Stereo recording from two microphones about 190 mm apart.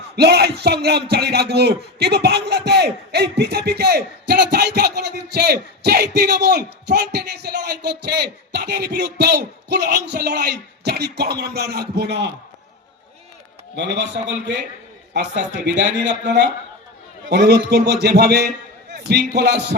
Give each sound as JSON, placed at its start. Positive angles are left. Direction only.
{"t": 0.2, "sound": "speech", "side_deg": -60}
{"t": 13.7, "sound": "speech", "side_deg": -70}